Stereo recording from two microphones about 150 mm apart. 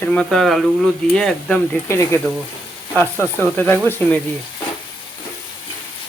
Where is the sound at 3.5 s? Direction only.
10° left (ahead or behind).